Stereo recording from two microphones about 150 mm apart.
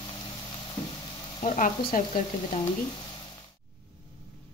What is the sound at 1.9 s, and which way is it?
Frying, 65° left (ahead or behind).